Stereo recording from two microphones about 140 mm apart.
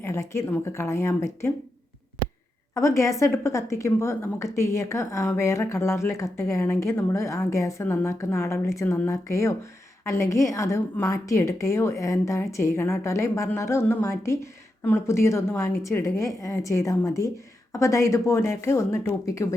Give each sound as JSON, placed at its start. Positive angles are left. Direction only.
{"t": 0.0, "sound": "a woman's voice", "side_deg": 20}
{"t": 2.7, "sound": "a woman's voice", "side_deg": 20}